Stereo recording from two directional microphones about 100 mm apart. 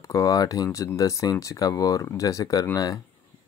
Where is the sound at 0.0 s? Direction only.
35° left (ahead or behind).